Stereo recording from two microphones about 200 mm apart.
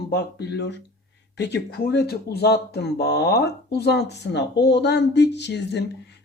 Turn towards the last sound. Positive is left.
turn(degrees=60)  # may be behind; listen again after turning